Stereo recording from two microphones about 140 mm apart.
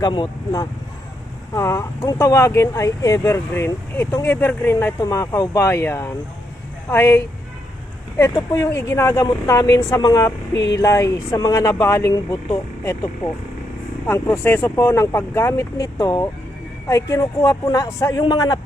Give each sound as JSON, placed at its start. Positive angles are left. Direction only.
{"t": 0.0, "sound": "speech", "side_deg": 30}
{"t": 8.2, "sound": "speech", "side_deg": 20}